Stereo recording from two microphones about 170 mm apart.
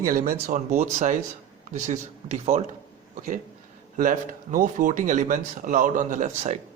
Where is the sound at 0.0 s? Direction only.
55° right (ahead or behind).